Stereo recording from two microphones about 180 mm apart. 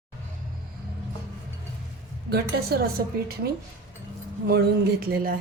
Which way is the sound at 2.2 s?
65° right (ahead or behind).